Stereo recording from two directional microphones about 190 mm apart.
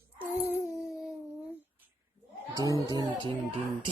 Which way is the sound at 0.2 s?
10° right (ahead or behind).